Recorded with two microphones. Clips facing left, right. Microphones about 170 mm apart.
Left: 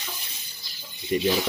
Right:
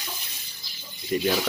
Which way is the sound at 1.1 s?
5° left (ahead or behind).